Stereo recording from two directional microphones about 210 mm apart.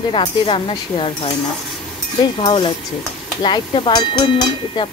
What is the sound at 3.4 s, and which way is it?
Speech, 20° left (ahead or behind).